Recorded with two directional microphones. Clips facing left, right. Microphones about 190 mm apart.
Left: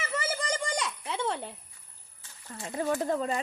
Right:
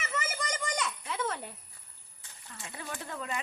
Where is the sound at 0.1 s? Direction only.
30° left (ahead or behind).